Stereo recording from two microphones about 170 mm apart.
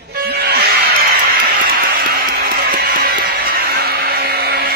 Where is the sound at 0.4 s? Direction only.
70° right (ahead or behind).